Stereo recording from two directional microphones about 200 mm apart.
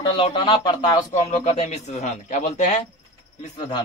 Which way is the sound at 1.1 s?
35° left (ahead or behind).